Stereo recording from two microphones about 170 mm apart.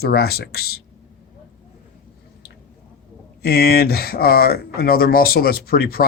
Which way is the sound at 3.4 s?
65° left (ahead or behind).